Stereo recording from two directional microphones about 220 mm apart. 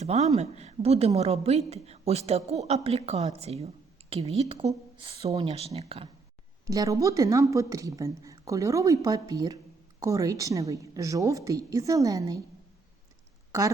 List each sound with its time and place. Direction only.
0.0 s a woman's voice: 30° right (ahead or behind)
6.7 s a woman's voice: 15° right (ahead or behind)